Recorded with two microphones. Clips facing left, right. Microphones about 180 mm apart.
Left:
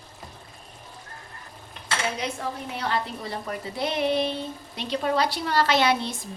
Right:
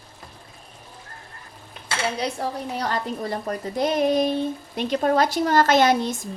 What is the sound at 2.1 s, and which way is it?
A woman's voice, 35° right (ahead or behind).